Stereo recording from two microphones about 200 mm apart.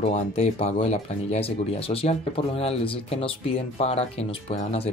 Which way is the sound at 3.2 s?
30° left (ahead or behind).